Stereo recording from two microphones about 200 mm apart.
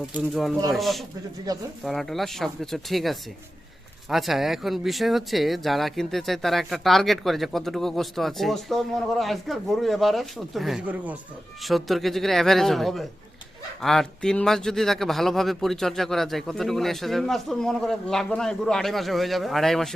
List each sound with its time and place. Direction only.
0.1 s speech: centre (ahead or behind)
1.5 s speech: 15° right (ahead or behind)
1.8 s speech: centre (ahead or behind)